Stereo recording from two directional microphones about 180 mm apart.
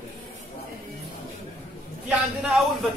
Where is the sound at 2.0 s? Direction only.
Centre (ahead or behind).